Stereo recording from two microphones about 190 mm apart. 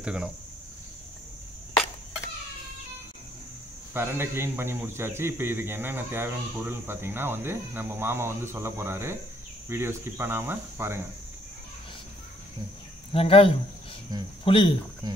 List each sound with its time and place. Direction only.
0.0 s speech: 5° right (ahead or behind)
3.9 s a man's voice: 15° right (ahead or behind)
13.1 s speech: 30° left (ahead or behind)
15.0 s speech: 20° right (ahead or behind)